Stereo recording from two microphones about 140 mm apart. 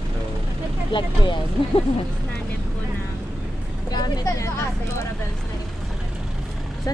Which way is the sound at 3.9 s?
25° left (ahead or behind).